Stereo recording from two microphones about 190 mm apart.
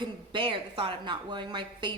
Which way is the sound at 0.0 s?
25° right (ahead or behind).